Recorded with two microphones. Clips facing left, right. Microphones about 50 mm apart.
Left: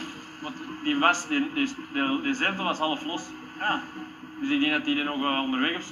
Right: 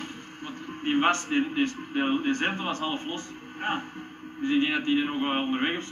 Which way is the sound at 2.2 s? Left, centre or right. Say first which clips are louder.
Left 1 dB; left.